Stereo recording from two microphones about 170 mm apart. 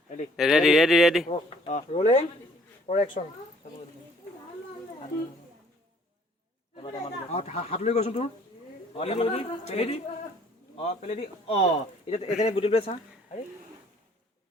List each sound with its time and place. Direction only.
0.3 s speech: centre (ahead or behind)
1.3 s a man's voice: 40° left (ahead or behind)
6.8 s a man's voice: 40° left (ahead or behind)